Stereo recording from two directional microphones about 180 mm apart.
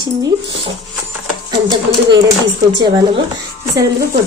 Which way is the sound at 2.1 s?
85° right.